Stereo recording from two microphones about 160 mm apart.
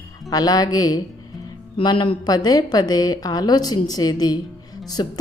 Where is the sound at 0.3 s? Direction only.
25° left (ahead or behind).